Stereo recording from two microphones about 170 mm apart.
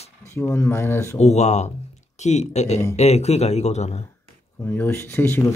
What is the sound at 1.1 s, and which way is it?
Speech, 40° left (ahead or behind).